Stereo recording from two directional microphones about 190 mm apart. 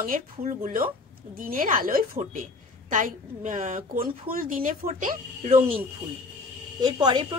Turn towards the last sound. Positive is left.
turn(degrees=-20)  # may be behind; listen again after turning